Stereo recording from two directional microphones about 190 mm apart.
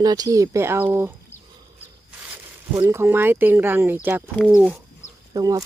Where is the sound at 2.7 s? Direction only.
15° right (ahead or behind).